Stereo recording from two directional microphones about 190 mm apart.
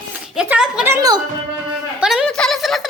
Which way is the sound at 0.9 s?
20° right (ahead or behind).